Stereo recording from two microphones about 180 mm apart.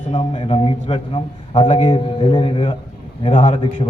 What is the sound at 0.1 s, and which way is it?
A man's voice, 25° left (ahead or behind).